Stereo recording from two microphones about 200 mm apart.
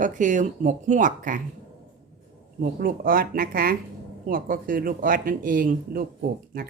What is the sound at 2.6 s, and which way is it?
Speech, 45° right (ahead or behind).